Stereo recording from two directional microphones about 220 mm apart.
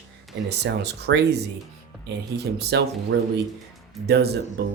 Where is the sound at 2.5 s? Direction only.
45° right (ahead or behind).